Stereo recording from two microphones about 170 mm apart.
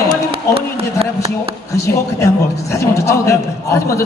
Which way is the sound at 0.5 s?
35° right (ahead or behind).